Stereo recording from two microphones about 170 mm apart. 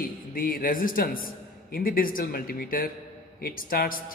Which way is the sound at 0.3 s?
55° left (ahead or behind).